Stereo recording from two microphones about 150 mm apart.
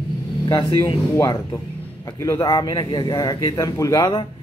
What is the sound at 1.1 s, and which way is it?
Speech, 20° left (ahead or behind).